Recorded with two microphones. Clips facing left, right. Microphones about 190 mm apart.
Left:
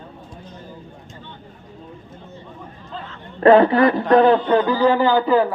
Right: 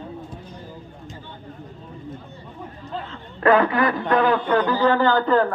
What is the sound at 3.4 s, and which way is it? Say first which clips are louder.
A man's voice: left 6 dB; 30° left (ahead or behind).